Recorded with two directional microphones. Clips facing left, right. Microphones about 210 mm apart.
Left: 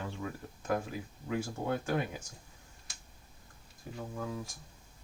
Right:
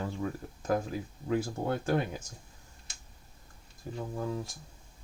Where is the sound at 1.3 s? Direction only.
35° right (ahead or behind).